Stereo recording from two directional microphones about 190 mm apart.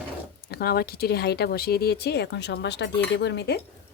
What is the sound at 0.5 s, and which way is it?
Speech, 55° left (ahead or behind).